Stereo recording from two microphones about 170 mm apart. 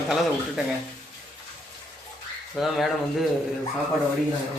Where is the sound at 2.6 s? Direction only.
Centre (ahead or behind).